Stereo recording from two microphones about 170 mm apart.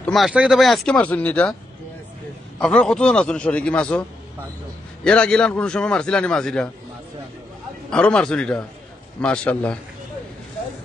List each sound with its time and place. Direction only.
0.0 s a man's voice: centre (ahead or behind)
2.6 s a man's voice: 5° left (ahead or behind)
5.0 s a man's voice: 5° left (ahead or behind)
7.9 s a man's voice: 5° left (ahead or behind)